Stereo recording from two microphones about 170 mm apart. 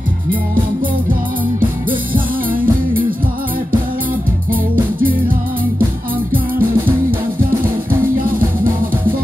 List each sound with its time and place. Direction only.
1.6 s music: 55° right (ahead or behind)
6.3 s music: 55° right (ahead or behind)